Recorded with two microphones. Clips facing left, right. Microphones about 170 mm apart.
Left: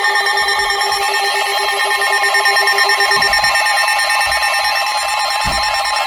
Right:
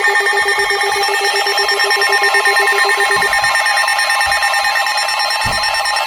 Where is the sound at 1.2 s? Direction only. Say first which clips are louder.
Right 1 dB; 5° left (ahead or behind).